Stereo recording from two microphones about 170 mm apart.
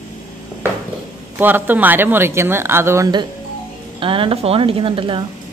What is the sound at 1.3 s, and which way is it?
Speech, 10° right (ahead or behind).